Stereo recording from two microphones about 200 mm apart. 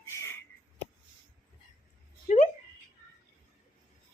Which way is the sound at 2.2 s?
35° left (ahead or behind).